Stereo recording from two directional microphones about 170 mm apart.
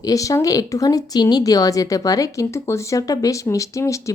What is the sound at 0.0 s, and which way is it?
Speech, 20° left (ahead or behind).